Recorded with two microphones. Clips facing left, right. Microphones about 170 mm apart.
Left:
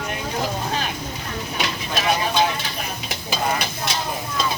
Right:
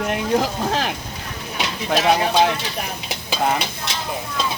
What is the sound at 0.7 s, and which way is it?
Boat, 90° right.